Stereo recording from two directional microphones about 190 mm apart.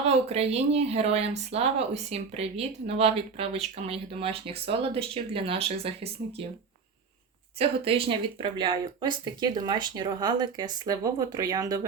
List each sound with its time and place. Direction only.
0.0 s speech: 35° right (ahead or behind)
7.6 s speech: 30° right (ahead or behind)